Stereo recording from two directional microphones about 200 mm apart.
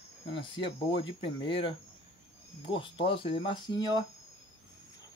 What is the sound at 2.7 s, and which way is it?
Speech, 25° left (ahead or behind).